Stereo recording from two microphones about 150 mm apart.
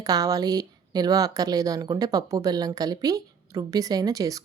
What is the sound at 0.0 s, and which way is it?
Speech, 25° right (ahead or behind).